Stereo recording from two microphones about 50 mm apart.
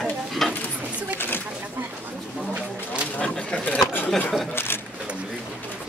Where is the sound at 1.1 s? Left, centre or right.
Left.